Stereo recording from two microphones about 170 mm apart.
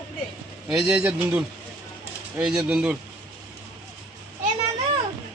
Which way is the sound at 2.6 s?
5° right (ahead or behind).